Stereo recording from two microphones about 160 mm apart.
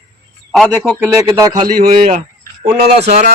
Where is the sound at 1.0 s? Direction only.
20° right (ahead or behind).